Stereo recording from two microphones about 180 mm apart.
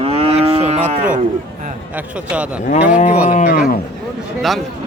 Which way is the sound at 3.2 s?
40° left (ahead or behind).